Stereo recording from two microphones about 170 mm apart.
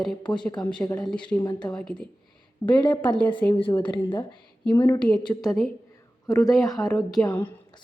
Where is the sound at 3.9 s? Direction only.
25° left (ahead or behind).